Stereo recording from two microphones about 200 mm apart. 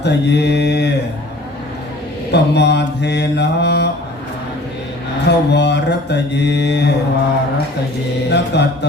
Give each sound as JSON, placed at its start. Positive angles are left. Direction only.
{"t": 0.0, "sound": "mantra", "side_deg": 60}
{"t": 2.3, "sound": "mantra", "side_deg": 55}
{"t": 5.2, "sound": "mantra", "side_deg": 60}
{"t": 8.3, "sound": "mantra", "side_deg": 60}